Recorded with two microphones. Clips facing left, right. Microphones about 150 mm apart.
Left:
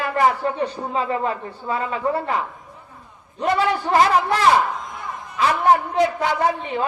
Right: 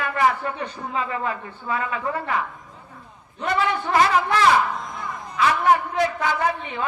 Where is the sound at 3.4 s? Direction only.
35° left (ahead or behind).